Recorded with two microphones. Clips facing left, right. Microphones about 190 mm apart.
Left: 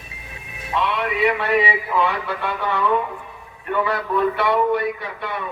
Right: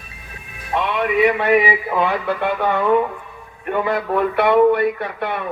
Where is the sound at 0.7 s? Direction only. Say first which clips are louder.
Right 3 dB; 55° right (ahead or behind).